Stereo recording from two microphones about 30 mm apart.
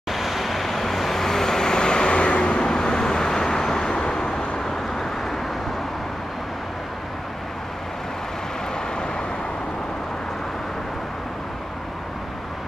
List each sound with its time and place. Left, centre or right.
0.1 s vehicle: centre; by 2.6 s left
2.6 s vehicle: left